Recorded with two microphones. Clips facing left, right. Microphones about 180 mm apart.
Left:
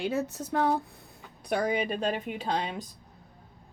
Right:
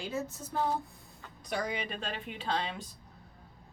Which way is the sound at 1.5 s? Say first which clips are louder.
Left 7 dB; 55° left (ahead or behind).